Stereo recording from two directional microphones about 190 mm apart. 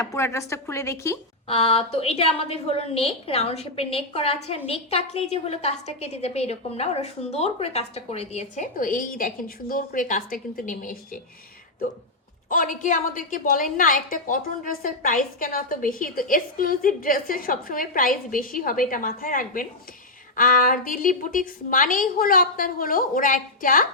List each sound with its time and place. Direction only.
0.0 s a woman's voice: 15° left (ahead or behind)
1.5 s a woman's voice: 30° left (ahead or behind); by 11.2 s 45° left (ahead or behind)
12.5 s a woman's voice: 45° left (ahead or behind)